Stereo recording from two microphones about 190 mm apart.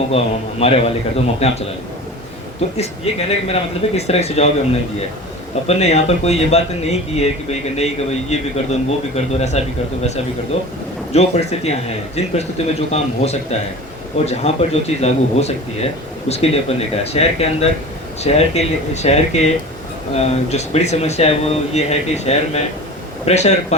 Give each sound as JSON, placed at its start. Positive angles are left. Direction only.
{"t": 0.1, "sound": "speech", "side_deg": 30}